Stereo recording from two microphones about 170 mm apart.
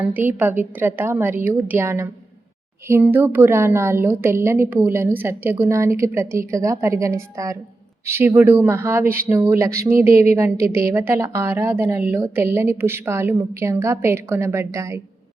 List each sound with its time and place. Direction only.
0.0 s a woman's voice: 10° right (ahead or behind)